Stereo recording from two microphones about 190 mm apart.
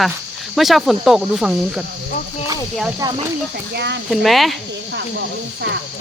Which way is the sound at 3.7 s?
65° right (ahead or behind).